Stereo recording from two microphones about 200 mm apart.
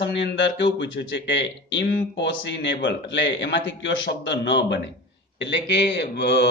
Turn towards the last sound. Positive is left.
turn(degrees=60)  # may be behind; listen again after turning